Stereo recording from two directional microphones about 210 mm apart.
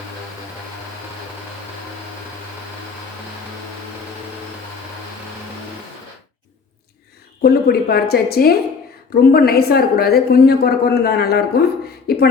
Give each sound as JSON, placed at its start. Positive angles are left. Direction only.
{"t": 7.4, "sound": "a woman's voice", "side_deg": 45}